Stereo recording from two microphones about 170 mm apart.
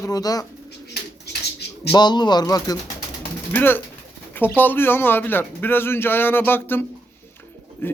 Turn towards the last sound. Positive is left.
turn(degrees=10)  # may be behind; listen again after turning